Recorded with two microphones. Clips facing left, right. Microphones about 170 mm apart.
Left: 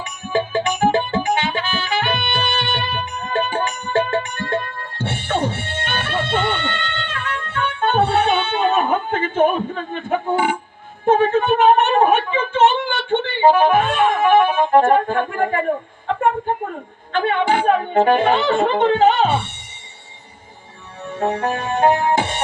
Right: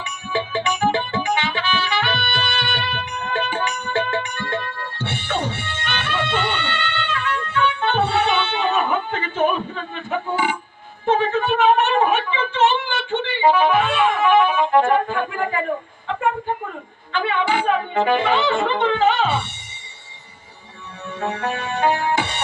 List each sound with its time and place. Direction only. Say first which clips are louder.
0.0 s music: left 4 dB; 50° left (ahead or behind)
11.0 s a sound: left 4 dB; 50° left (ahead or behind)
17.1 s speech: left 3 dB; 50° left (ahead or behind)
21.2 s music: left 4 dB; 30° left (ahead or behind)
21.8 s music: left 4 dB; 50° left (ahead or behind)